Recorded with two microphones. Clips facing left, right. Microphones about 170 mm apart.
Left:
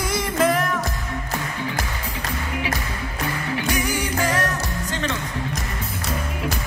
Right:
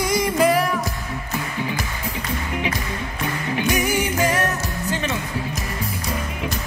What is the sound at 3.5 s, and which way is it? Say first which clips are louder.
Music: right 4 dB; 15° right (ahead or behind).